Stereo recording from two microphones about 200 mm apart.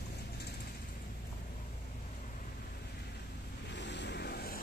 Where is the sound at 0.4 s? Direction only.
55° left (ahead or behind).